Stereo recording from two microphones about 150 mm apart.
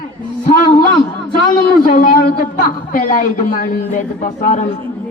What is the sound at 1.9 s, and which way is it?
A man's voice, 75° left (ahead or behind).